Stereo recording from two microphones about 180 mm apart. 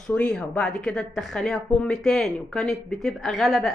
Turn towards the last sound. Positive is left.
turn(degrees=0)  # may be behind; listen again after turning